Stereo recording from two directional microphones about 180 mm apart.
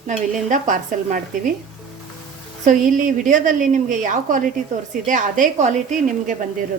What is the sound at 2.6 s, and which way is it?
Speech, 45° right (ahead or behind).